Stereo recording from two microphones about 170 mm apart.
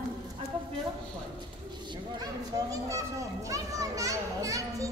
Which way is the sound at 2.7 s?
20° right (ahead or behind).